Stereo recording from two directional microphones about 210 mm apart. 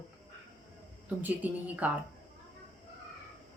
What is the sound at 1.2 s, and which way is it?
Speech, 5° right (ahead or behind).